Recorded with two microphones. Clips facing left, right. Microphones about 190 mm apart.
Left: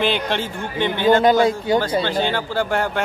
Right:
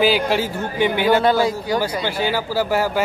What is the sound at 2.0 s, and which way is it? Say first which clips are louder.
Speech: even; 10° right (ahead or behind).